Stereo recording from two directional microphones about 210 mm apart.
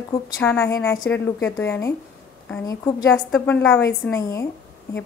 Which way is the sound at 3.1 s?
5° left (ahead or behind).